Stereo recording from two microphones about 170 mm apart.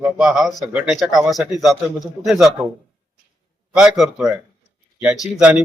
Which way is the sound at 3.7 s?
5° right (ahead or behind).